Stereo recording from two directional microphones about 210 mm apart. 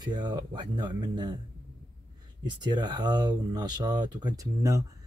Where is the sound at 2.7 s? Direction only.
20° right (ahead or behind).